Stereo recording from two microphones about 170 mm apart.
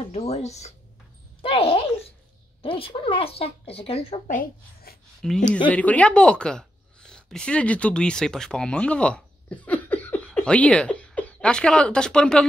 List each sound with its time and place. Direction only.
0.1 s speech: 40° left (ahead or behind)
1.4 s a sound: 35° left (ahead or behind)
2.6 s speech: 30° left (ahead or behind)
4.3 s speech: 55° left (ahead or behind)
5.2 s a woman's voice: centre (ahead or behind)